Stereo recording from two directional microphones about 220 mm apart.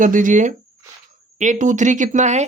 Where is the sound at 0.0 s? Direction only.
35° right (ahead or behind).